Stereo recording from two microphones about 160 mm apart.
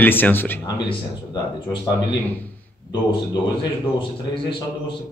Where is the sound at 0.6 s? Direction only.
25° left (ahead or behind).